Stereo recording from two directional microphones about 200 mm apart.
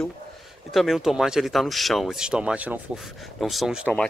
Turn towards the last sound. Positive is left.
turn(degrees=0)  # may be behind; listen again after turning